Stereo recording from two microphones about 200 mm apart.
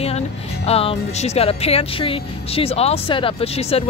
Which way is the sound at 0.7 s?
30° left (ahead or behind).